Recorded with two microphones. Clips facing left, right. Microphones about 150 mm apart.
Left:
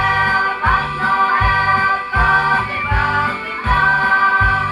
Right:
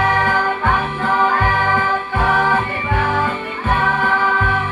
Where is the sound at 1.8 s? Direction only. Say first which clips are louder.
Right 1 dB; 20° right (ahead or behind).